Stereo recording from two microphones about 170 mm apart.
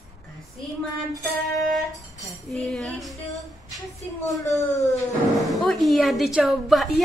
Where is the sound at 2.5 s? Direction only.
5° left (ahead or behind).